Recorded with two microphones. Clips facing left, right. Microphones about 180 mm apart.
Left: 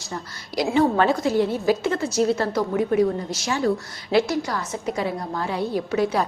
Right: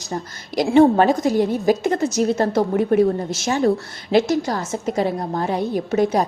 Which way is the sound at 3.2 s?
25° right (ahead or behind).